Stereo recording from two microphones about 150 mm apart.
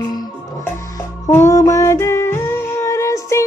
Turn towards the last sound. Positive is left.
turn(degrees=20)  # may be behind; listen again after turning